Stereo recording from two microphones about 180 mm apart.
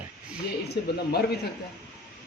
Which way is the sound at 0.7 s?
65° left (ahead or behind).